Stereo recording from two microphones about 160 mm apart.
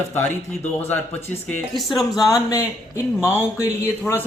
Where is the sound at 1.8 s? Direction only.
Centre (ahead or behind).